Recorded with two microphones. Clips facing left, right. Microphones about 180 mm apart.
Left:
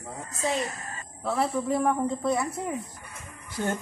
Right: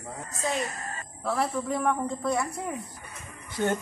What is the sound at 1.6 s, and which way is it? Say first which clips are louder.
Speech: left 3 dB; 30° left (ahead or behind).